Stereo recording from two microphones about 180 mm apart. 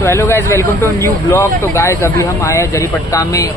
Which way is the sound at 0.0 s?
15° left (ahead or behind).